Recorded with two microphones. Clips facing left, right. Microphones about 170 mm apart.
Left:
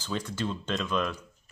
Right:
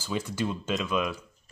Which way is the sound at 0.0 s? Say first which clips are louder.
Right 2 dB; 10° right (ahead or behind).